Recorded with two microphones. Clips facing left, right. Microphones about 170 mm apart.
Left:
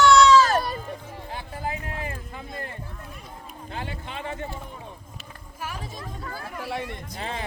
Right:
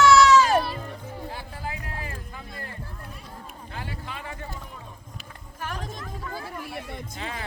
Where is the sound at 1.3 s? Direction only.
20° left (ahead or behind).